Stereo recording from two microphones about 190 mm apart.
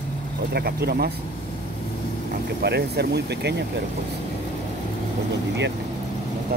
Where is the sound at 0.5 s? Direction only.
55° right (ahead or behind).